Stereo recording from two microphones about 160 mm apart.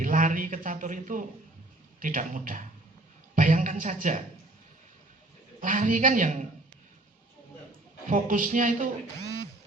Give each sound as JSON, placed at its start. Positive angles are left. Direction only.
{"t": 0.0, "sound": "a man's voice", "side_deg": -55}
{"t": 5.5, "sound": "a man's voice", "side_deg": -55}
{"t": 8.0, "sound": "speech", "side_deg": -55}